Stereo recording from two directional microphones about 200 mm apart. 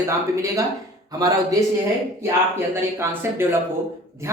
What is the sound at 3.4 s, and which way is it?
Speech, 10° right (ahead or behind).